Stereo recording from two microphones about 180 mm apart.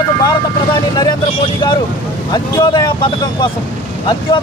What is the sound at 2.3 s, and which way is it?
Speech, 25° left (ahead or behind).